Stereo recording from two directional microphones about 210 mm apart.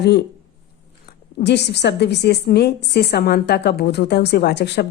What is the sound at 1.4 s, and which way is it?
A woman's voice, 55° left (ahead or behind).